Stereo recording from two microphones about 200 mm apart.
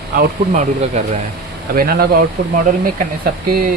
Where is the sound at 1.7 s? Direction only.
50° right (ahead or behind).